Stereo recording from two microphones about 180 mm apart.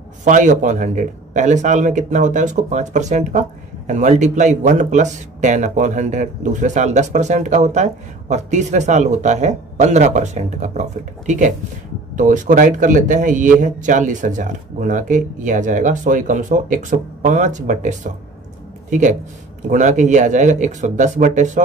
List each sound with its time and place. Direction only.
0.2 s speech: 45° right (ahead or behind)